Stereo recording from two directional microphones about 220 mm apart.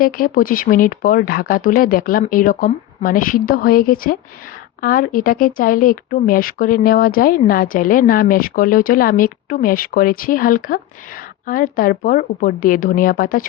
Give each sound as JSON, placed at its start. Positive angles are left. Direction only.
{"t": 0.0, "sound": "speech", "side_deg": 40}